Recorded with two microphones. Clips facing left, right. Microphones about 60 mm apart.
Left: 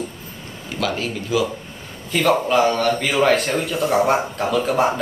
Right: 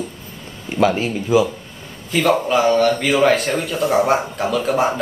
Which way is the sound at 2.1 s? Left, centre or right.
Centre.